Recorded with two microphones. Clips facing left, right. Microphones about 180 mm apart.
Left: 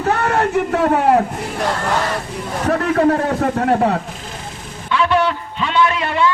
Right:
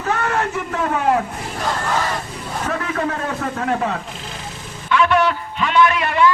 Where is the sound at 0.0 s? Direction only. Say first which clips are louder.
Left 4 dB; 35° left (ahead or behind).